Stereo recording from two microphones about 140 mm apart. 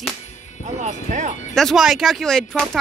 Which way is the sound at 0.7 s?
55° right (ahead or behind).